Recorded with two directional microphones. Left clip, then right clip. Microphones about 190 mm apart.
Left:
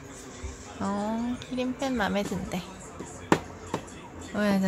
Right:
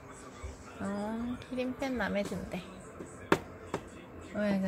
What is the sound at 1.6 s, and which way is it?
A woman's voice, 5° left (ahead or behind).